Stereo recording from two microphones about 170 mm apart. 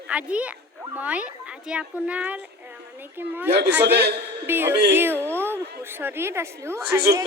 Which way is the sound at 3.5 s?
85° right.